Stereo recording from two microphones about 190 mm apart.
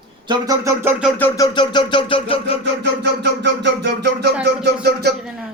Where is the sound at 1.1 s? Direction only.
10° left (ahead or behind).